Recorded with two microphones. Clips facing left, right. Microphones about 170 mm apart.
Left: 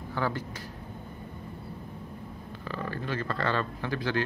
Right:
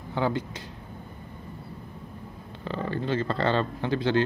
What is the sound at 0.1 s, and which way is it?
Speech, 20° right (ahead or behind).